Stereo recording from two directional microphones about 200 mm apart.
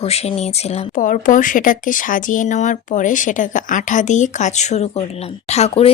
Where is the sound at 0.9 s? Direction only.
40° left (ahead or behind).